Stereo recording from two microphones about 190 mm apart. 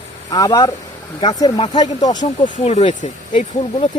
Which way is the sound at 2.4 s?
35° left (ahead or behind).